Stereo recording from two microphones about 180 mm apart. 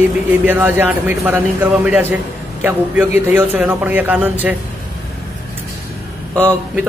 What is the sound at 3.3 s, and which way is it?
A man's voice, 10° right (ahead or behind).